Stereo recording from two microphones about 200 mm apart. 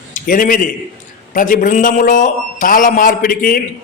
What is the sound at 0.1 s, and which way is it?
A man's voice, 45° left (ahead or behind).